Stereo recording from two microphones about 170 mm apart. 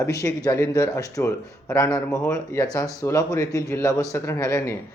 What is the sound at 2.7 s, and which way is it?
Speech, 20° left (ahead or behind).